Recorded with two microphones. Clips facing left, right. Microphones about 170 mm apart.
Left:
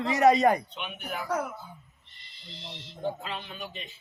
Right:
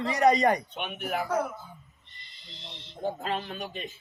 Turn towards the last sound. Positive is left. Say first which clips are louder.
# right 4 dB
turn(degrees=-45)  # may be behind; listen again after turning